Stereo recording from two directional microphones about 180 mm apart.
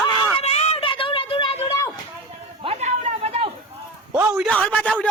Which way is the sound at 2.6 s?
35° right (ahead or behind).